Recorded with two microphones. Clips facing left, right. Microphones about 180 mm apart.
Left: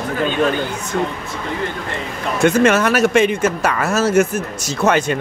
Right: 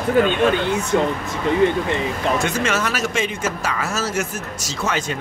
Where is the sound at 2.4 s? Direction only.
55° left (ahead or behind).